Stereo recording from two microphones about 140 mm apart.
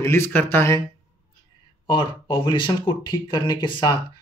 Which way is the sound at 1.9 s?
35° left (ahead or behind).